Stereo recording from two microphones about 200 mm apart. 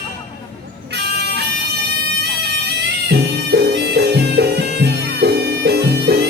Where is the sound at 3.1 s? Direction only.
55° right (ahead or behind).